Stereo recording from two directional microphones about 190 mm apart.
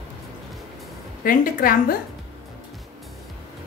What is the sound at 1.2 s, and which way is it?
Speech, 45° left (ahead or behind).